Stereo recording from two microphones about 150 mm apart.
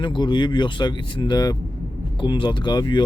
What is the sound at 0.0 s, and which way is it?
Speech, 30° left (ahead or behind).